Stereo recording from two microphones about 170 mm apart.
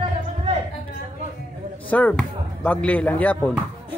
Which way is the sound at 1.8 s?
10° left (ahead or behind).